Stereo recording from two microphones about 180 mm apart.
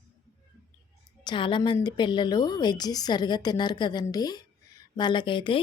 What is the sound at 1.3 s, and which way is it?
A woman's voice, 25° left (ahead or behind).